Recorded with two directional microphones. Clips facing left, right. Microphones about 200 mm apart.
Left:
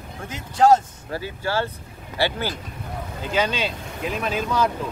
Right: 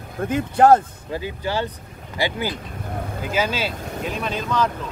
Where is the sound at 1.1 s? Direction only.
15° right (ahead or behind); by 4.7 s 10° left (ahead or behind).